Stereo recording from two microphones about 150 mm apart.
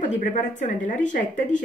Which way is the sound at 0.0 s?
55° left (ahead or behind).